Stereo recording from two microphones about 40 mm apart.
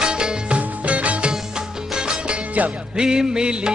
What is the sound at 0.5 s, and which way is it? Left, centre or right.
Music, right.